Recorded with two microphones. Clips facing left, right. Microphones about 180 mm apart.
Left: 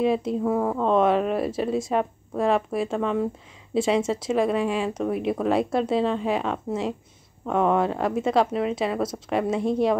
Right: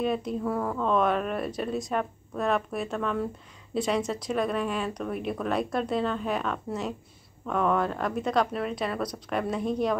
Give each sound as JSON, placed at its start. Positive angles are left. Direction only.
{"t": 0.0, "sound": "speech", "side_deg": 25}